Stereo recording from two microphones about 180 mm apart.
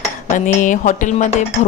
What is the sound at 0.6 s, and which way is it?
Speech, 45° left (ahead or behind).